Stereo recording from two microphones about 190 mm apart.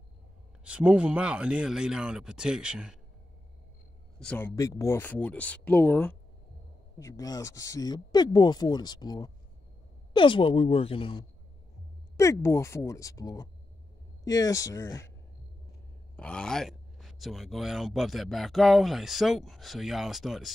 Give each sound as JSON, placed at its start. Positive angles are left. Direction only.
{"t": 0.7, "sound": "speech", "side_deg": -5}
{"t": 4.2, "sound": "speech", "side_deg": 5}
{"t": 12.2, "sound": "speech", "side_deg": 15}
{"t": 16.2, "sound": "speech", "side_deg": 5}